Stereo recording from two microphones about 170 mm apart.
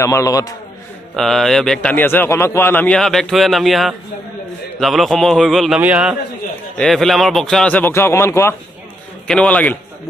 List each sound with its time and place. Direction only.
0.0 s a man's voice: 15° left (ahead or behind)
1.1 s a man's voice: centre (ahead or behind)
6.8 s a man's voice: centre (ahead or behind)